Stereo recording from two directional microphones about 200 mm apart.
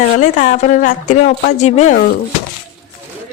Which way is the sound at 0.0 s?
40° left (ahead or behind).